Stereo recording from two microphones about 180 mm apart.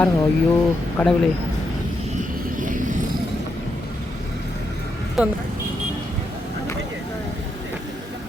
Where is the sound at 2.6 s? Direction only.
45° right (ahead or behind).